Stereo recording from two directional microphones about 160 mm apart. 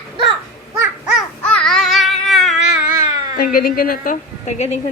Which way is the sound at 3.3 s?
65° left (ahead or behind).